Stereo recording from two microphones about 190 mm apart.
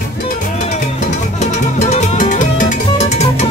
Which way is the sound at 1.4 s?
40° left (ahead or behind).